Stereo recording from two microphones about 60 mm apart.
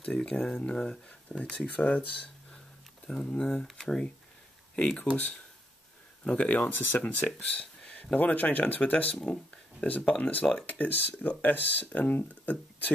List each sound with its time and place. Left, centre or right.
0.0 s speech: centre
1.4 s speech: left
3.1 s speech: centre
6.2 s speech: left